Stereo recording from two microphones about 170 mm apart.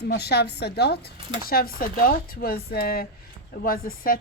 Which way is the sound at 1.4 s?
60° left (ahead or behind).